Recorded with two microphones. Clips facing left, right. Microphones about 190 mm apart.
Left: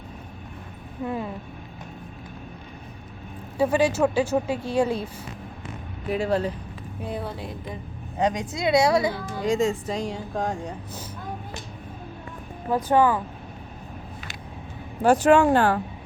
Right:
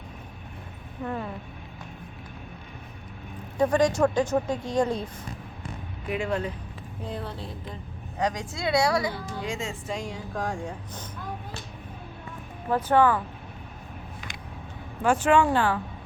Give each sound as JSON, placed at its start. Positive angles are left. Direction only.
{"t": 1.0, "sound": "speech", "side_deg": 10}
{"t": 3.6, "sound": "speech", "side_deg": 5}
{"t": 6.1, "sound": "speech", "side_deg": 35}
{"t": 7.0, "sound": "a woman's voice", "side_deg": 10}
{"t": 9.2, "sound": "speech", "side_deg": 40}
{"t": 12.7, "sound": "speech", "side_deg": 15}
{"t": 15.0, "sound": "speech", "side_deg": 40}